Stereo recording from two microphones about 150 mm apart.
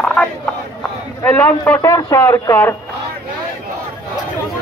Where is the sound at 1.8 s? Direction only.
25° left (ahead or behind).